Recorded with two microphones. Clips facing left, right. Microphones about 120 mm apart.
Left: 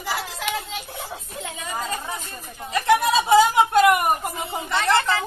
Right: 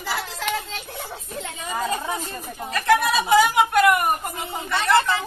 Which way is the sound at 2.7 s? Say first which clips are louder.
Left 1 dB; 25° left (ahead or behind).